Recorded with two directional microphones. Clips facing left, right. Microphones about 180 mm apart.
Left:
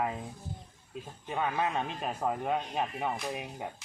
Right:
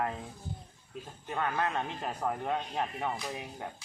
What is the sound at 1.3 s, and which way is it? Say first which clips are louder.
A man's voice: left 1 dB; 10° left (ahead or behind).